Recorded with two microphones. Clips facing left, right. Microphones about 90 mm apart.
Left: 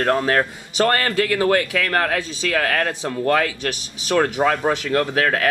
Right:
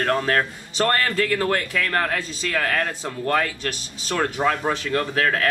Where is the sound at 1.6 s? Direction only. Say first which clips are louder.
Left 3 dB; 65° left (ahead or behind).